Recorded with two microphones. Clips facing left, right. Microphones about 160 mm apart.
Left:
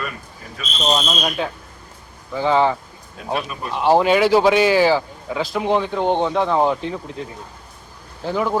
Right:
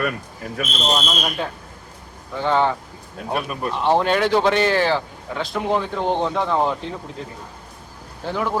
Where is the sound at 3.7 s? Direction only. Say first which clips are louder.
Left 4 dB; 5° left (ahead or behind).